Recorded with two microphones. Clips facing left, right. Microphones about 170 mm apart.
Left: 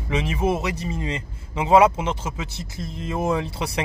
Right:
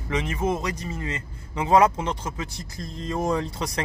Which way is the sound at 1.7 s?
10° left (ahead or behind).